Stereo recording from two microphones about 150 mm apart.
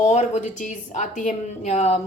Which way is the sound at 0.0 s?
50° left (ahead or behind).